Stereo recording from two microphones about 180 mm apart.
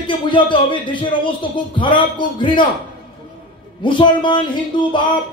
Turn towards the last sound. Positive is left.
turn(degrees=25)  # may be behind; listen again after turning